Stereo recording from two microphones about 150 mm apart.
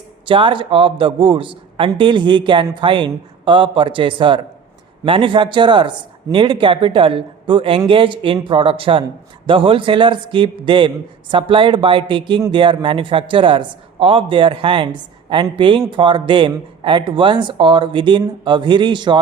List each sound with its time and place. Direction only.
0.3 s a man's voice: 35° right (ahead or behind)